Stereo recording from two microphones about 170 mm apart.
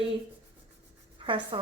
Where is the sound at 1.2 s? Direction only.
30° right (ahead or behind).